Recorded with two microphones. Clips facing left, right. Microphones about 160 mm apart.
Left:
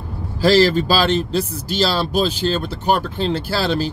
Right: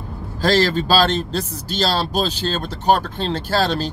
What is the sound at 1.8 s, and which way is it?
Speech, 40° right (ahead or behind).